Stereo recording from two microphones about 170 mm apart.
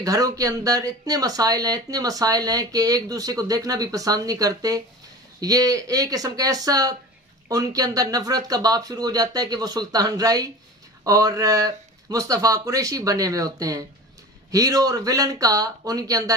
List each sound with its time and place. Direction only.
0.0 s speech: 20° right (ahead or behind)